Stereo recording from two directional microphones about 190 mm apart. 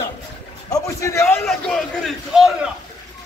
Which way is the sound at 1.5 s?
Centre (ahead or behind).